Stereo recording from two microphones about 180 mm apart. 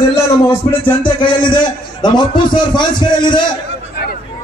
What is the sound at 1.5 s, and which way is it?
A man's voice, 25° left (ahead or behind).